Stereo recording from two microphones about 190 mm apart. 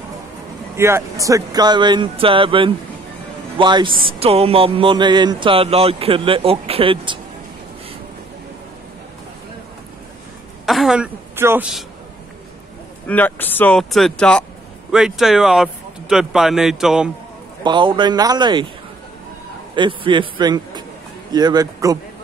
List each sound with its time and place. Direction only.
0.7 s speech: 15° right (ahead or behind)
10.6 s a sound: centre (ahead or behind)
13.0 s speech: 10° left (ahead or behind)
17.6 s speech: 25° right (ahead or behind)
19.7 s a man's voice: 25° right (ahead or behind)